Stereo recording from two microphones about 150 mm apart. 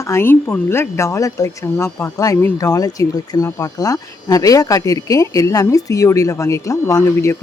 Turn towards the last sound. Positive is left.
turn(degrees=20)  # may be behind; listen again after turning